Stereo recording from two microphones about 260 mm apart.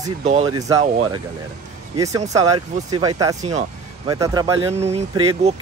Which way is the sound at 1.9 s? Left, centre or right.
Centre.